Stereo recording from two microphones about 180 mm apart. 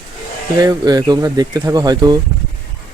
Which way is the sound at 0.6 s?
20° right (ahead or behind).